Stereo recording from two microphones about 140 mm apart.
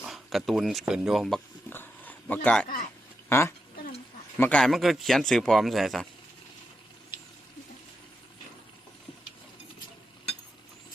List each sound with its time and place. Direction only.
0.0 s speech: centre (ahead or behind)
1.7 s a sound: 15° left (ahead or behind)
3.2 s speech: 15° left (ahead or behind); by 6.1 s centre (ahead or behind)